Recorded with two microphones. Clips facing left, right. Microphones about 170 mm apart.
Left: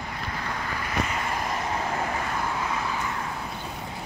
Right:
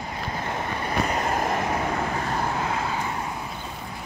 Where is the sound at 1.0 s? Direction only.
45° right (ahead or behind).